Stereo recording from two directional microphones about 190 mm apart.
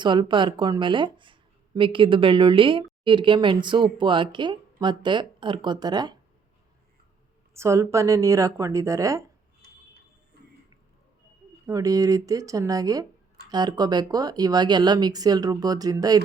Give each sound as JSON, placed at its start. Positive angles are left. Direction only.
{"t": 0.0, "sound": "speech", "side_deg": -25}
{"t": 7.5, "sound": "a woman's voice", "side_deg": -15}
{"t": 10.3, "sound": "a sound", "side_deg": -55}
{"t": 11.6, "sound": "a woman's voice", "side_deg": -15}